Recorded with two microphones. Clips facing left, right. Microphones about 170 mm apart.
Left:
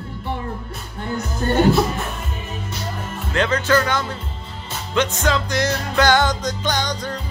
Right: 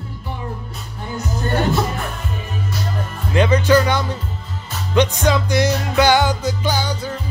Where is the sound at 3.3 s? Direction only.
10° right (ahead or behind).